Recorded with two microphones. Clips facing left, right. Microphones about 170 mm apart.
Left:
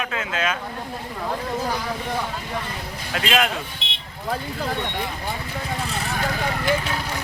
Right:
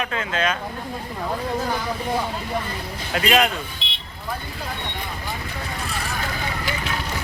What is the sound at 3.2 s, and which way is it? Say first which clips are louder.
Speech: right 3 dB; centre (ahead or behind).